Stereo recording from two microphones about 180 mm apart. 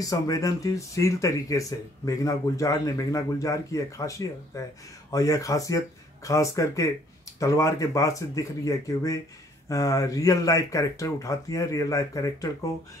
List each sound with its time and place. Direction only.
0.0 s speech: 20° left (ahead or behind)